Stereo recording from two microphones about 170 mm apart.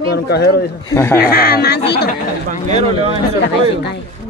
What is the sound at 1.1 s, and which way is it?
Speech, 65° left (ahead or behind).